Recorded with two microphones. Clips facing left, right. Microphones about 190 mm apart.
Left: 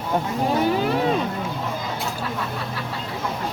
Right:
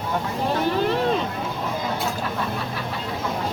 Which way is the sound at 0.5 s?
10° left (ahead or behind).